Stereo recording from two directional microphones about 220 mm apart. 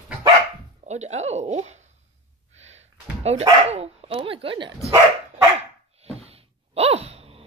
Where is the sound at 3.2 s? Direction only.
30° right (ahead or behind).